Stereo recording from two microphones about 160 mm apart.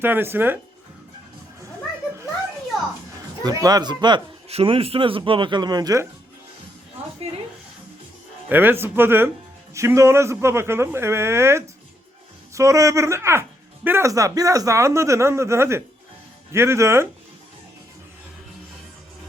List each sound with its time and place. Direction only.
0.0 s speech: 15° right (ahead or behind)
3.4 s speech: 25° right (ahead or behind)
4.4 s speech: 35° right (ahead or behind); by 6.1 s 20° right (ahead or behind)
8.4 s speech: 10° right (ahead or behind)